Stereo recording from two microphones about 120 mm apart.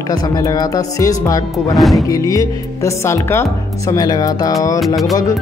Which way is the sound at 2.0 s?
25° left (ahead or behind).